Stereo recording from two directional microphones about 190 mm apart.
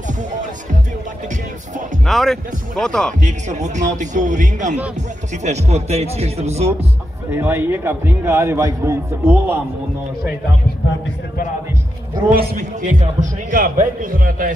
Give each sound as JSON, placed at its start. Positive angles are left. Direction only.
{"t": 2.0, "sound": "speech", "side_deg": 0}
{"t": 3.2, "sound": "speech", "side_deg": -40}
{"t": 7.2, "sound": "a man's voice", "side_deg": -10}
{"t": 12.4, "sound": "a man's voice", "side_deg": -40}